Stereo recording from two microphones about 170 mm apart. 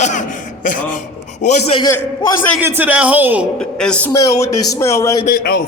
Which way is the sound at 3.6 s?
5° left (ahead or behind).